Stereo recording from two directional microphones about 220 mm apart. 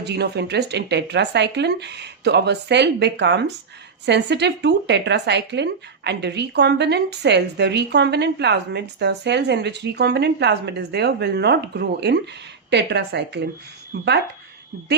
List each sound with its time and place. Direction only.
0.0 s speech: 50° right (ahead or behind)